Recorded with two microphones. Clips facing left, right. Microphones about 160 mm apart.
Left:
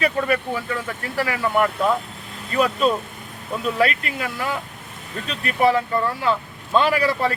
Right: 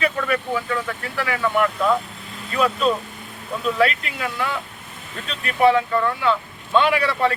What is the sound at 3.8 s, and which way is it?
Speech, 40° left (ahead or behind).